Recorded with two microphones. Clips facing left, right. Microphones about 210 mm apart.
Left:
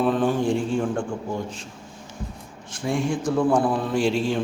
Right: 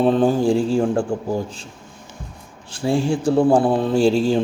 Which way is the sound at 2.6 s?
30° right (ahead or behind).